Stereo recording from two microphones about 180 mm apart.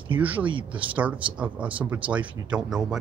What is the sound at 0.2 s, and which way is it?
Speech, 10° right (ahead or behind).